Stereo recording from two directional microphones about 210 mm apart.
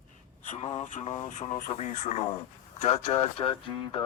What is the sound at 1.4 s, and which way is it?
Speech, 30° left (ahead or behind).